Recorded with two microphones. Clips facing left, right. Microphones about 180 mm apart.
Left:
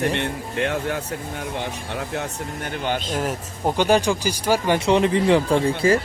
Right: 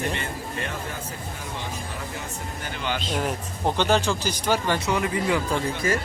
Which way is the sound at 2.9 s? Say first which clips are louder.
Left 3 dB; 50° left (ahead or behind).